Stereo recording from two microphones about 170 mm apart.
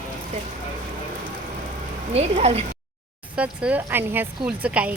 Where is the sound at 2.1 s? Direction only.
40° right (ahead or behind).